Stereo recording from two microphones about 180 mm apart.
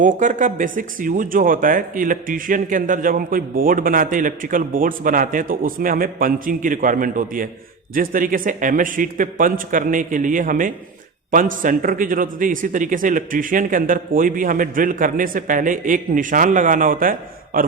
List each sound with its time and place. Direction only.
0.2 s speech: 45° right (ahead or behind)